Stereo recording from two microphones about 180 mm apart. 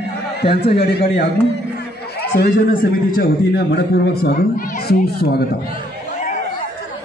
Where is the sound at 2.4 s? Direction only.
50° left (ahead or behind).